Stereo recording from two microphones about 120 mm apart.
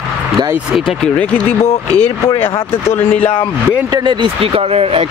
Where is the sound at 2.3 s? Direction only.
20° left (ahead or behind).